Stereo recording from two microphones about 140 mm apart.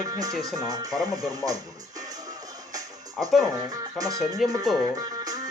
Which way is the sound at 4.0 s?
25° right (ahead or behind).